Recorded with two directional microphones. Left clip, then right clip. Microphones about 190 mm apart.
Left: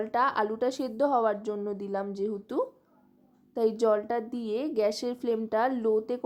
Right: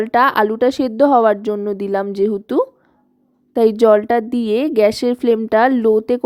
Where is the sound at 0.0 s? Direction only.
45° right (ahead or behind).